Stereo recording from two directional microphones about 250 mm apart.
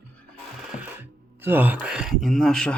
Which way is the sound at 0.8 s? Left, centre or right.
Centre.